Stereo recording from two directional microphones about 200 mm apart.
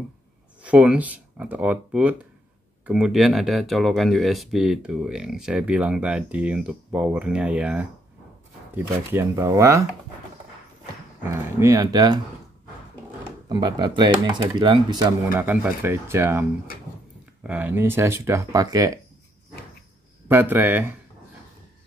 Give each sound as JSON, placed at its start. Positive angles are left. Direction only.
{"t": 0.6, "sound": "speech", "side_deg": -5}
{"t": 11.5, "sound": "speech", "side_deg": -15}
{"t": 13.5, "sound": "speech", "side_deg": -20}
{"t": 20.2, "sound": "speech", "side_deg": -10}